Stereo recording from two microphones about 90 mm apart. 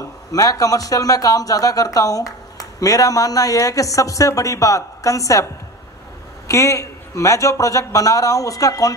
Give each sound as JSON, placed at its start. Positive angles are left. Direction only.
{"t": 0.3, "sound": "speech", "side_deg": 40}